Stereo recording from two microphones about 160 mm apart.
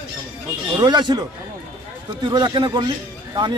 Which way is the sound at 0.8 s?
25° right (ahead or behind).